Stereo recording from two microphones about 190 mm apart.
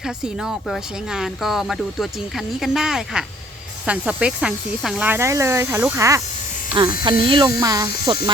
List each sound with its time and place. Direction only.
0.4 s speech: centre (ahead or behind); by 8.2 s 20° right (ahead or behind)